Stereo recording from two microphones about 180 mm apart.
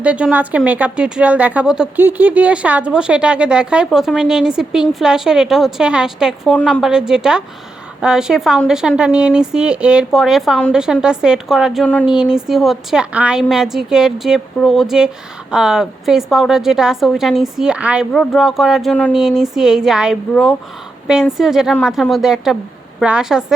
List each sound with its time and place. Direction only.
0.0 s speech: 5° right (ahead or behind)